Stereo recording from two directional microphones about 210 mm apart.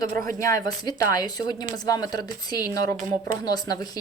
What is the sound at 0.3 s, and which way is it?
Speech, 15° left (ahead or behind).